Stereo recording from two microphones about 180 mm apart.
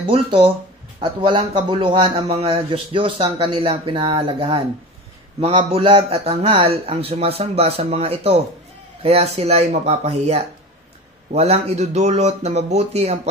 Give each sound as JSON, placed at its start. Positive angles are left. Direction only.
{"t": 0.1, "sound": "speech", "side_deg": -30}